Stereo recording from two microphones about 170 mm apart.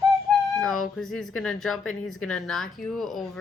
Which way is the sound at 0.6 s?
Centre (ahead or behind).